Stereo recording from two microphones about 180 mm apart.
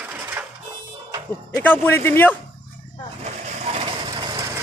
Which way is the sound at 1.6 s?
10° left (ahead or behind).